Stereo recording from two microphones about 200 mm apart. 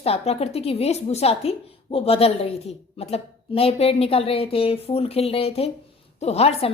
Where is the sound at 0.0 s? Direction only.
30° left (ahead or behind).